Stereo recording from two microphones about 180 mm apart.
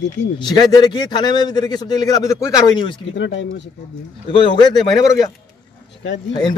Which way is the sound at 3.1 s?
80° left.